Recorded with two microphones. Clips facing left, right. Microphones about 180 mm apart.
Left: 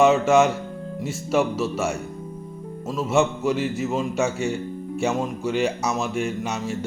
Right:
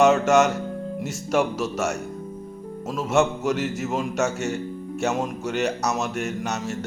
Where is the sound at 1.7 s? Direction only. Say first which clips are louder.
Even; 10° left (ahead or behind).